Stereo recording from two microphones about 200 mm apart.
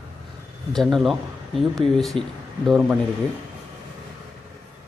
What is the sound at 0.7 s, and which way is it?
Speech, centre (ahead or behind).